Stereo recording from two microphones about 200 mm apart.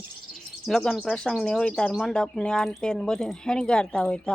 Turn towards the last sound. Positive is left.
turn(degrees=5)  # may be behind; listen again after turning